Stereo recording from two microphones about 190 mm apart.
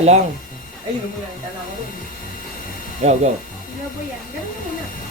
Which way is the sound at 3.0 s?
35° right (ahead or behind).